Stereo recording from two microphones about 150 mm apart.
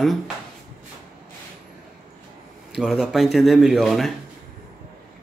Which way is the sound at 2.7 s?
Centre (ahead or behind).